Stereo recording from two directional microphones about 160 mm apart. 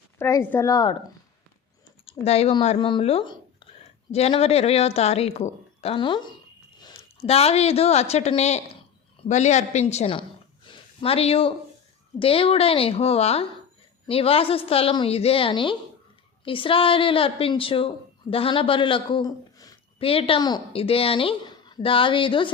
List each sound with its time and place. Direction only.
0.2 s a woman's voice: 15° left (ahead or behind)
2.0 s a woman's voice: 40° left (ahead or behind); by 19.8 s 25° left (ahead or behind)
20.0 s a woman's voice: 35° left (ahead or behind)